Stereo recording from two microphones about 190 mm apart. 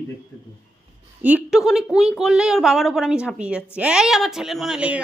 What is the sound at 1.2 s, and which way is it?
A woman's voice, 5° right (ahead or behind).